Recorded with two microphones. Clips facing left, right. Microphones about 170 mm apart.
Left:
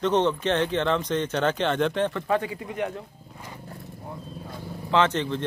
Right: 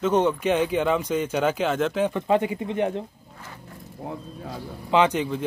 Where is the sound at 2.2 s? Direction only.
20° right (ahead or behind).